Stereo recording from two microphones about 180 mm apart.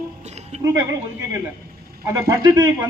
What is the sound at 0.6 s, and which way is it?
Speech, 15° right (ahead or behind).